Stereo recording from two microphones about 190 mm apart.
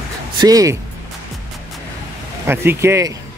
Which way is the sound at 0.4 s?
20° right (ahead or behind).